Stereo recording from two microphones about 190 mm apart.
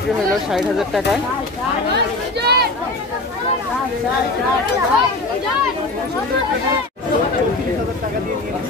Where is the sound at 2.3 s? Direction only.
60° right (ahead or behind).